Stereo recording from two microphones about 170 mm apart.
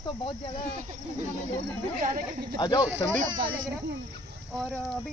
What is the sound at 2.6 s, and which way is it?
Speech, 25° left (ahead or behind).